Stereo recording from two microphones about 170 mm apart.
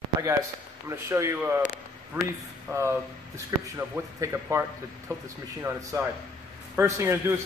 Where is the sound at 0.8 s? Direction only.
15° right (ahead or behind).